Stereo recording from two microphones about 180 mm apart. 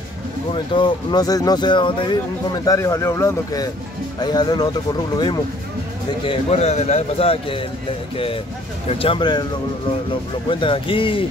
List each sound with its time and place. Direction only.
0.7 s speech: 25° left (ahead or behind)
8.8 s speech: 30° left (ahead or behind)
10.5 s speech: 30° left (ahead or behind)